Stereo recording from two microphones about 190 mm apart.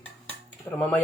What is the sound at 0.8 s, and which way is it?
Speech, 10° left (ahead or behind).